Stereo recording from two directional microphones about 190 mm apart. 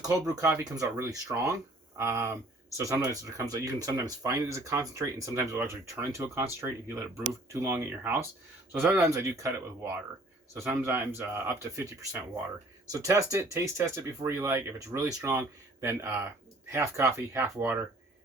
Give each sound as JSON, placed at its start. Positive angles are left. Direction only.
{"t": 0.0, "sound": "speech", "side_deg": -20}